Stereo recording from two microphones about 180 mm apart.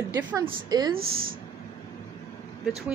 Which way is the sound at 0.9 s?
55° right (ahead or behind).